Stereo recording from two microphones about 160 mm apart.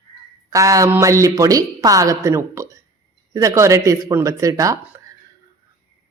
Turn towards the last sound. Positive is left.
turn(degrees=-20)  # may be behind; listen again after turning